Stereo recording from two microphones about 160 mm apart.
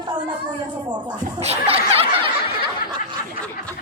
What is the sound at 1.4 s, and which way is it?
Snicker, 40° right (ahead or behind).